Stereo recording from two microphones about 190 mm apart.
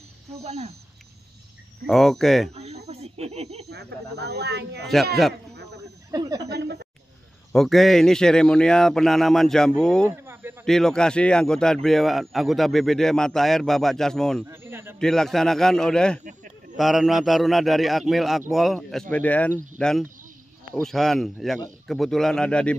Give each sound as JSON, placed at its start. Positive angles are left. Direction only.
{"t": 0.3, "sound": "speech", "side_deg": -35}
{"t": 1.9, "sound": "speech", "side_deg": 0}
{"t": 2.5, "sound": "a sound", "side_deg": -35}
{"t": 3.6, "sound": "speech", "side_deg": -60}
{"t": 6.1, "sound": "speech", "side_deg": -20}
{"t": 6.5, "sound": "speech", "side_deg": -60}
{"t": 7.5, "sound": "speech", "side_deg": 0}
{"t": 10.0, "sound": "a sound", "side_deg": -10}
{"t": 10.6, "sound": "speech", "side_deg": 5}
{"t": 14.4, "sound": "speech", "side_deg": -10}
{"t": 15.0, "sound": "speech", "side_deg": 5}